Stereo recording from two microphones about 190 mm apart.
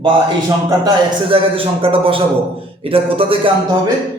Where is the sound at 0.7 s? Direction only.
25° right (ahead or behind).